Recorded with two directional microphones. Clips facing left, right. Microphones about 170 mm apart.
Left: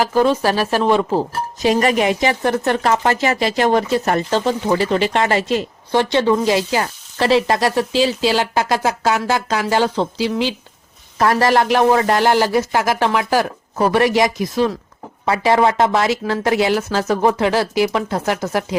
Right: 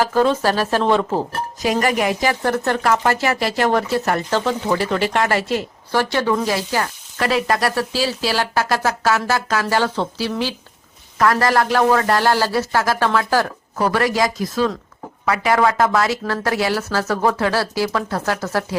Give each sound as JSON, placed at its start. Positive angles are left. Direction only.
{"t": 0.0, "sound": "speech", "side_deg": 15}
{"t": 1.6, "sound": "speech", "side_deg": 25}
{"t": 15.2, "sound": "speech", "side_deg": 25}